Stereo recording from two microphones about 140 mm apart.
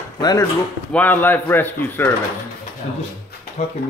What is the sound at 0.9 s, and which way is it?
A man's voice, 15° left (ahead or behind).